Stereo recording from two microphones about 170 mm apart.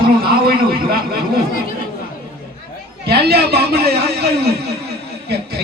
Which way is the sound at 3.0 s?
70° right (ahead or behind).